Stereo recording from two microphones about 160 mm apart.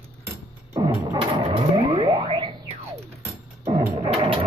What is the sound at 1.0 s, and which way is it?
Vehicle, 30° right (ahead or behind).